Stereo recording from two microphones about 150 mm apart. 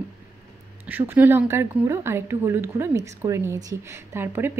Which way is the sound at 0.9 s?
15° right (ahead or behind).